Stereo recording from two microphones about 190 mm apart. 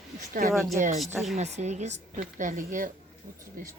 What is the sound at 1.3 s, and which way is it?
A woman's voice, 35° right (ahead or behind).